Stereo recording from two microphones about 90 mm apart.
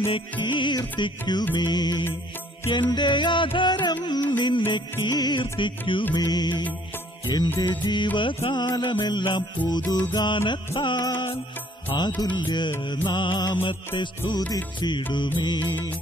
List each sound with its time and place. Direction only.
0.1 s music: 60° left (ahead or behind)
6.1 s music: 50° left (ahead or behind)
13.6 s music: 65° left (ahead or behind)